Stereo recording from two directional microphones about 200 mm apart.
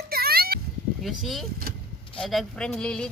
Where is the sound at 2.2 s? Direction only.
Centre (ahead or behind).